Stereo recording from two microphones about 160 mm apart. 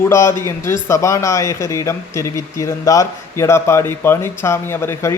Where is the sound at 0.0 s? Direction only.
15° left (ahead or behind).